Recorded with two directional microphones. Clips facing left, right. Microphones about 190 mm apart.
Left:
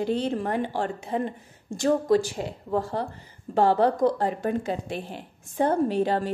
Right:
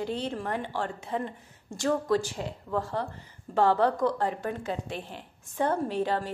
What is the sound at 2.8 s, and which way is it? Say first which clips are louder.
Speech: left 3 dB; 35° left (ahead or behind).